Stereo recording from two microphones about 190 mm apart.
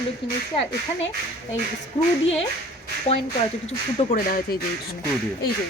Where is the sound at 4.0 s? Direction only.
50° left (ahead or behind).